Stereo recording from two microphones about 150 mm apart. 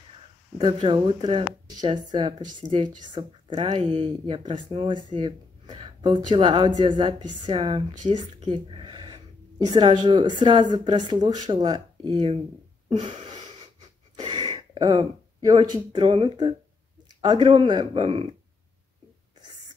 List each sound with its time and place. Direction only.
0.6 s speech: 30° right (ahead or behind)
2.6 s a woman's voice: centre (ahead or behind)
3.0 s speech: 35° right (ahead or behind)
14.1 s speech: 30° right (ahead or behind)